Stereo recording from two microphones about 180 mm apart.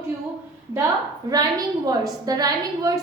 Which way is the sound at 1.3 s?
20° right (ahead or behind).